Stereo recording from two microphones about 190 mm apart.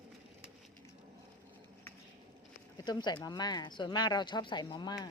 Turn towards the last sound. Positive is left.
turn(degrees=20)  # may be behind; listen again after turning